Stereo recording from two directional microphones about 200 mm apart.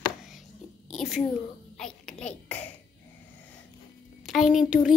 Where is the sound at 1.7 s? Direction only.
5° left (ahead or behind).